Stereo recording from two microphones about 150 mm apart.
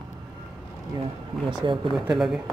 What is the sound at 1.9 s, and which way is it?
Speech, centre (ahead or behind).